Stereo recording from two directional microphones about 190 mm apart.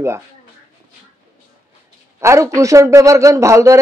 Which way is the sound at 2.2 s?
15° right (ahead or behind).